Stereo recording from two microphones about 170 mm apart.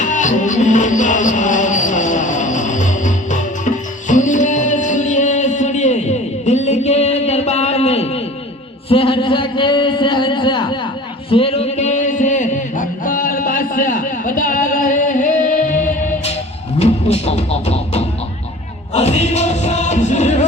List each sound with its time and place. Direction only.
0.0 s music: 50° left (ahead or behind)
8.9 s a sound: 30° left (ahead or behind)
11.3 s music: 35° left (ahead or behind); by 15.8 s 50° left (ahead or behind)
16.7 s music: 40° left (ahead or behind)